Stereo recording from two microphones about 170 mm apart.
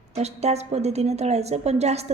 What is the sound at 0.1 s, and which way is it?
A woman's voice, 40° right (ahead or behind).